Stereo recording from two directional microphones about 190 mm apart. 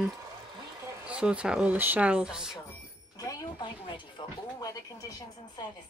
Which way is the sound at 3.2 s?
20° left (ahead or behind).